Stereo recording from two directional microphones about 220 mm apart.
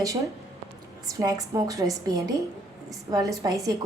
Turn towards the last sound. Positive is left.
turn(degrees=-15)  # may be behind; listen again after turning